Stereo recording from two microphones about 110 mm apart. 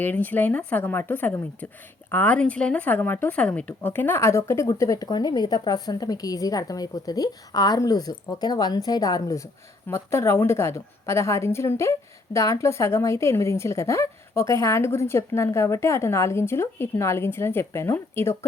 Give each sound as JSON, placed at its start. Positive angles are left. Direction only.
{"t": 0.0, "sound": "a woman's voice", "side_deg": 15}